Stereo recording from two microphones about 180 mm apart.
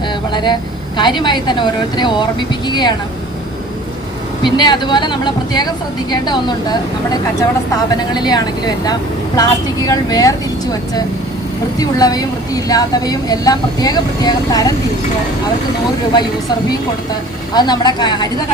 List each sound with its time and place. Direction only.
0.3 s vehicle: 25° left (ahead or behind)
0.9 s speech: 25° left (ahead or behind)
4.4 s speech: 25° left (ahead or behind)
17.5 s speech: 25° left (ahead or behind)